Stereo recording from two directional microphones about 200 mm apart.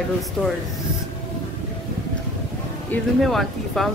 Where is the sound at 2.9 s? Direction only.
Centre (ahead or behind).